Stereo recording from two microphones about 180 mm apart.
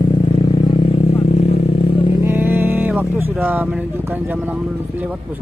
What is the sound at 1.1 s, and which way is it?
Vehicle, 35° left (ahead or behind).